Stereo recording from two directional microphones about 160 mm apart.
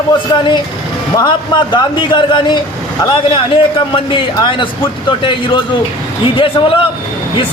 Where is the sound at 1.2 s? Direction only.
30° left (ahead or behind).